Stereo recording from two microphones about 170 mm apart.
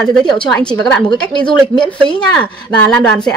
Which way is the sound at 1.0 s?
25° left (ahead or behind).